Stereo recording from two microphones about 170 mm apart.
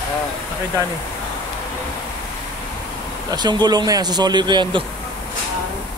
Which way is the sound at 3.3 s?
25° right (ahead or behind).